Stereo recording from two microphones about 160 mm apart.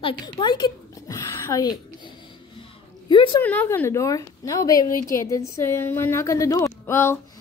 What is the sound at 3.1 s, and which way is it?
Speech, 30° left (ahead or behind).